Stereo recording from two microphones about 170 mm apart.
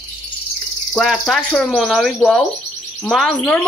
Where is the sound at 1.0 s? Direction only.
Centre (ahead or behind).